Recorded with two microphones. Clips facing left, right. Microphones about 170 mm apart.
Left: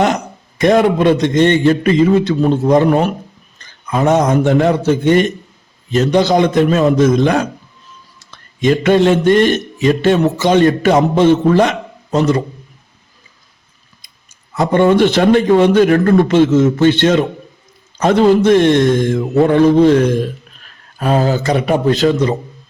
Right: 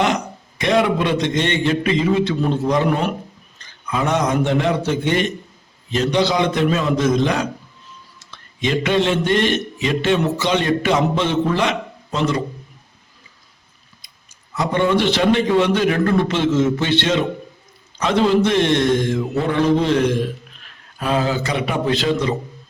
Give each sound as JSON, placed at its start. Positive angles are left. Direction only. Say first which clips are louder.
{"t": 0.6, "sound": "a man's voice", "louder": "left 6 dB", "side_deg": 45}
{"t": 14.0, "sound": "a man's voice", "louder": "even", "side_deg": 50}